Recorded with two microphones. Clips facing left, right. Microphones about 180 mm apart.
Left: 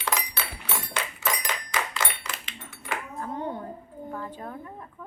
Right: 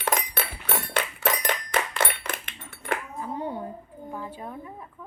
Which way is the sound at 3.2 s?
5° right (ahead or behind).